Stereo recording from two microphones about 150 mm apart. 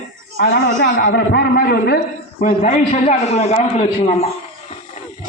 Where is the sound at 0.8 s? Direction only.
75° left (ahead or behind).